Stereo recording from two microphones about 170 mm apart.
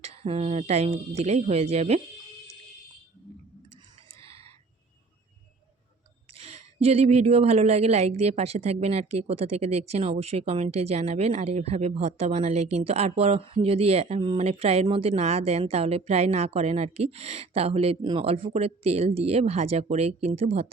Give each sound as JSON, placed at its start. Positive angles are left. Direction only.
{"t": 0.0, "sound": "a woman's voice", "side_deg": -35}
{"t": 4.2, "sound": "a sound", "side_deg": -35}
{"t": 6.3, "sound": "a woman's voice", "side_deg": -40}